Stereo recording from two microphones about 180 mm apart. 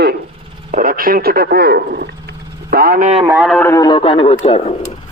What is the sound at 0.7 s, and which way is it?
Speech, 50° right (ahead or behind).